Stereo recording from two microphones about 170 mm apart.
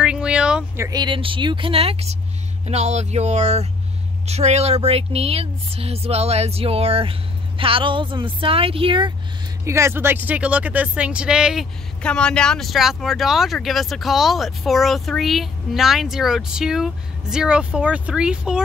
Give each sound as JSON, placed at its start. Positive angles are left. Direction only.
{"t": 0.0, "sound": "a sound", "side_deg": -5}
{"t": 0.8, "sound": "speech", "side_deg": -25}
{"t": 9.7, "sound": "speech", "side_deg": -15}